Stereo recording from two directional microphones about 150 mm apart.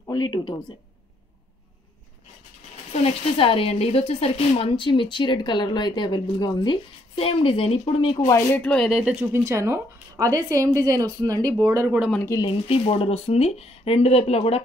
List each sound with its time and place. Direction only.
0.0 s speech: 30° left (ahead or behind)
2.9 s speech: 40° left (ahead or behind)
8.3 s speech: 20° left (ahead or behind)
8.5 s speech: 5° left (ahead or behind); by 11.9 s 15° right (ahead or behind)
12.3 s speech: 25° left (ahead or behind)
12.6 s speech: 40° left (ahead or behind)